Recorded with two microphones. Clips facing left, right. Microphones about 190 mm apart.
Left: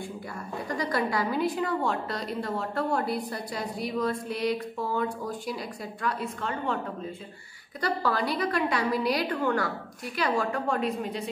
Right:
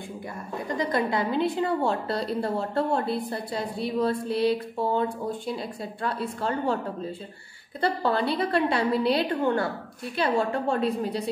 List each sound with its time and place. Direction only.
0.7 s a woman's voice: 20° right (ahead or behind)
7.8 s a woman's voice: 25° right (ahead or behind)